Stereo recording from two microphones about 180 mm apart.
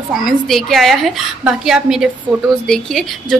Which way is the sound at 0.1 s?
Centre (ahead or behind).